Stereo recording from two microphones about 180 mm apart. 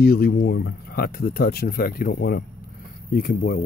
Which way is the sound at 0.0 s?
60° left (ahead or behind).